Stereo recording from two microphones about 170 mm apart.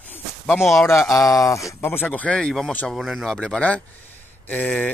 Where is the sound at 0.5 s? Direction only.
Centre (ahead or behind).